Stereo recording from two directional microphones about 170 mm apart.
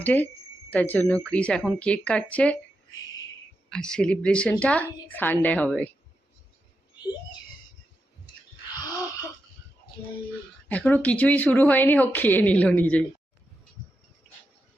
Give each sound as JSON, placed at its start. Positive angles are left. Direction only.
{"t": 0.0, "sound": "speech", "side_deg": 10}
{"t": 3.7, "sound": "speech", "side_deg": 5}
{"t": 10.7, "sound": "speech", "side_deg": 10}